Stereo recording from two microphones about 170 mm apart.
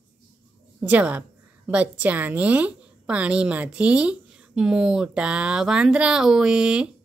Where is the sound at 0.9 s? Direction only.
10° right (ahead or behind).